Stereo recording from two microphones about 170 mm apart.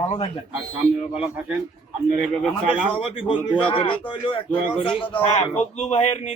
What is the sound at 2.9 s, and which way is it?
A man's voice, 30° left (ahead or behind).